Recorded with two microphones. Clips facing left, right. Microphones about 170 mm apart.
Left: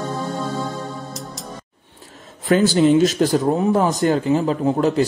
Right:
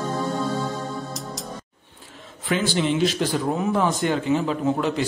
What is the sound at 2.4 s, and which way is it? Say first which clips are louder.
A man's voice: left 8 dB; 40° left (ahead or behind).